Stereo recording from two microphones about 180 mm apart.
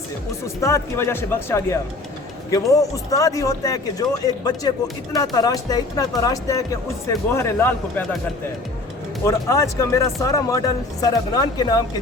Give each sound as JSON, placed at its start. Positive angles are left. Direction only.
{"t": 0.4, "sound": "speech", "side_deg": 15}
{"t": 9.2, "sound": "speech", "side_deg": 15}